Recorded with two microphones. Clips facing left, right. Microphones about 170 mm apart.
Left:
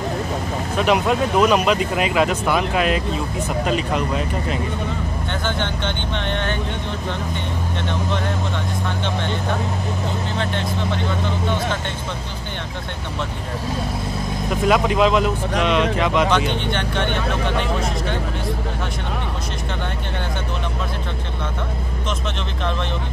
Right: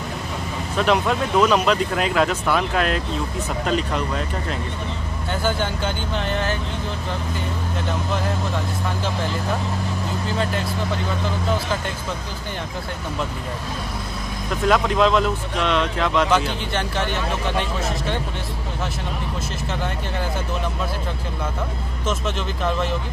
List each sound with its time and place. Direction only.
0.7 s speech: 10° left (ahead or behind)
5.4 s speech: 5° right (ahead or behind)
10.3 s speech: 5° right (ahead or behind)
14.7 s speech: 10° left (ahead or behind)
16.3 s speech: 5° right (ahead or behind)